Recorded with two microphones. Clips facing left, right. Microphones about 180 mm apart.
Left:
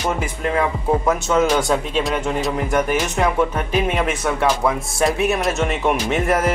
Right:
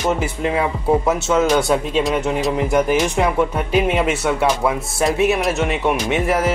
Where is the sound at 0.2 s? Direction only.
10° right (ahead or behind).